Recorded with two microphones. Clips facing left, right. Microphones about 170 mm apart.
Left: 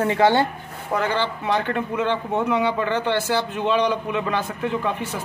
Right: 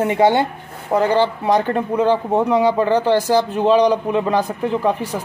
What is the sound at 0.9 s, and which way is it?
Speech, 35° right (ahead or behind).